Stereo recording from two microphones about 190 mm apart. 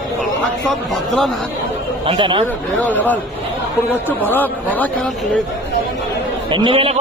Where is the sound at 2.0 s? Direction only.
25° right (ahead or behind).